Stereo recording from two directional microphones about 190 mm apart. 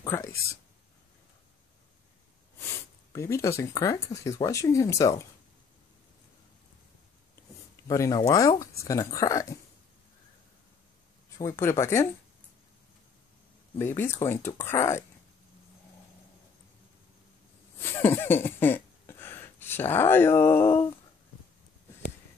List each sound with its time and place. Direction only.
0.0 s speech: 15° left (ahead or behind)
3.1 s speech: 15° left (ahead or behind)
7.9 s speech: 15° left (ahead or behind)
11.3 s speech: 15° left (ahead or behind)
13.7 s speech: 10° left (ahead or behind)
17.7 s a sound: 10° left (ahead or behind)